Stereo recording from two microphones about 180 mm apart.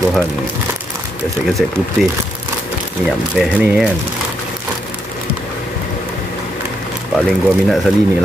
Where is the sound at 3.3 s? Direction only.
5° right (ahead or behind).